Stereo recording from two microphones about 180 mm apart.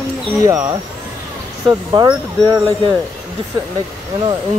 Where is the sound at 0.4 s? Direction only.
15° right (ahead or behind).